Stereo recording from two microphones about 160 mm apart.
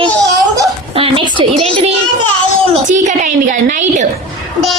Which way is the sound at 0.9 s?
35° right (ahead or behind).